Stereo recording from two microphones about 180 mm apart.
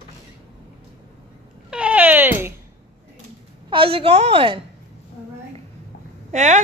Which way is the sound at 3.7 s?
30° right (ahead or behind).